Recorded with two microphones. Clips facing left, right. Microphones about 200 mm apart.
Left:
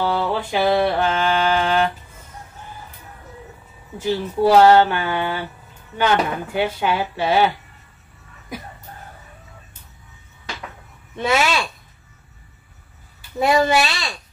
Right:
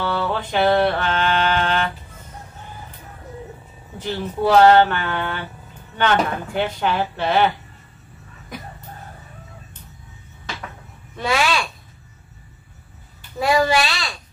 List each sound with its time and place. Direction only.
0.1 s music: 10° left (ahead or behind)
4.0 s music: 10° left (ahead or behind)
11.1 s speech: 25° left (ahead or behind)
13.4 s speech: 25° left (ahead or behind)